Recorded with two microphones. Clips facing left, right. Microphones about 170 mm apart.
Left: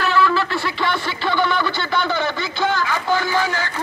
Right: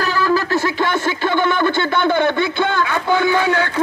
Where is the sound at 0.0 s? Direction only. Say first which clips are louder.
Right 1 dB; 40° right (ahead or behind).